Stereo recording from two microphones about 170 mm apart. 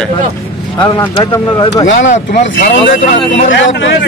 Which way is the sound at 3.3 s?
90° left.